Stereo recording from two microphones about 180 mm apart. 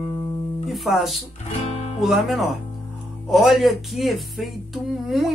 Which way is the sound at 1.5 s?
40° left (ahead or behind).